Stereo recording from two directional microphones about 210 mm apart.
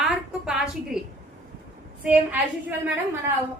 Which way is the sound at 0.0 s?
5° right (ahead or behind).